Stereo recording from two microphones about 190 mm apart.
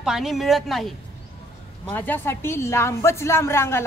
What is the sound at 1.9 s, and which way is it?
A woman's voice, 10° left (ahead or behind).